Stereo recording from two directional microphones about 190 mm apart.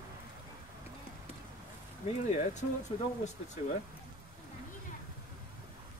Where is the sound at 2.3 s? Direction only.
40° left (ahead or behind).